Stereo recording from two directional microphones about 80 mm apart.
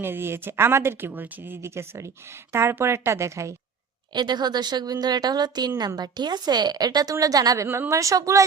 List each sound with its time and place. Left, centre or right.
0.0 s a woman's voice: right
4.1 s a woman's voice: right